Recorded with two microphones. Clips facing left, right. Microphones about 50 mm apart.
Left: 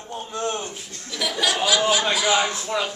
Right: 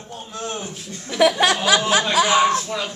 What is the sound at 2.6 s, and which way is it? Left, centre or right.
Speech, centre.